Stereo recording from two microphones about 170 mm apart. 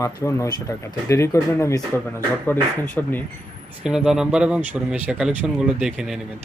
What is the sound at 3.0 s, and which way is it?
Speech, 5° left (ahead or behind).